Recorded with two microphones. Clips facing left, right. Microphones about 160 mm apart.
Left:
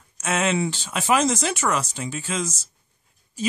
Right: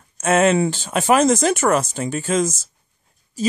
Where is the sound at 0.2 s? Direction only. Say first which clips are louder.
Right 7 dB; 50° right (ahead or behind).